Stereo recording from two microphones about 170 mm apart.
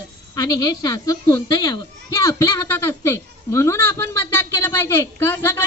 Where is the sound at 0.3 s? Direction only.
20° left (ahead or behind).